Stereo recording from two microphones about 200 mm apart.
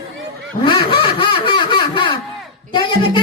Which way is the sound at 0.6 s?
25° left (ahead or behind).